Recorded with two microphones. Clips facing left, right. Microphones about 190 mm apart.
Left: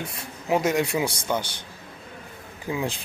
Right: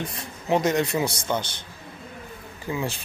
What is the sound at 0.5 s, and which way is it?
Speech, 10° left (ahead or behind).